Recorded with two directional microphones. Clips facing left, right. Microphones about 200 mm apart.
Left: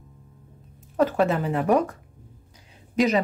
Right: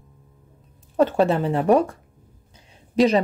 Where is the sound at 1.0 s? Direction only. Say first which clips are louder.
Right 3 dB; 30° right (ahead or behind).